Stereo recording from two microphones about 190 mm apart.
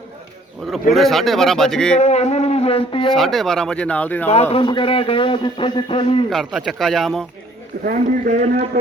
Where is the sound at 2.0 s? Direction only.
35° left (ahead or behind).